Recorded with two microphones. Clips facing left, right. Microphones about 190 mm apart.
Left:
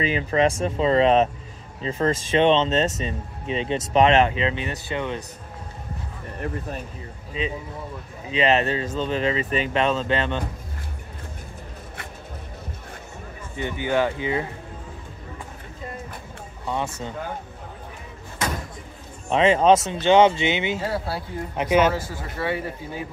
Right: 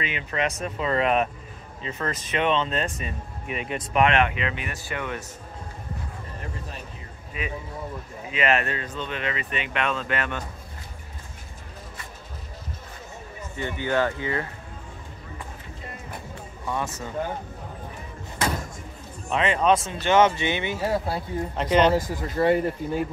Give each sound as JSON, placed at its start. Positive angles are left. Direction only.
{"t": 0.0, "sound": "speech", "side_deg": 35}
{"t": 6.4, "sound": "speech", "side_deg": 60}
{"t": 7.3, "sound": "speech", "side_deg": 25}
{"t": 13.6, "sound": "speech", "side_deg": 15}
{"t": 16.6, "sound": "speech", "side_deg": 25}
{"t": 19.2, "sound": "speech", "side_deg": 30}
{"t": 19.9, "sound": "speech", "side_deg": 20}
{"t": 20.8, "sound": "speech", "side_deg": -15}
{"t": 21.5, "sound": "speech", "side_deg": 10}
{"t": 22.4, "sound": "speech", "side_deg": -50}